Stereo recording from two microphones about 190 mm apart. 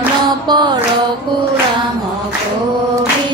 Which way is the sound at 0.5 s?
25° right (ahead or behind).